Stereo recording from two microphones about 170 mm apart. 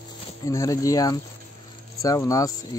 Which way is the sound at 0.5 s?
20° left (ahead or behind).